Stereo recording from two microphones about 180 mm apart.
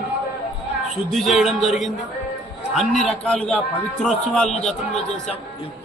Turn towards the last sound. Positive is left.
turn(degrees=5)  # may be behind; listen again after turning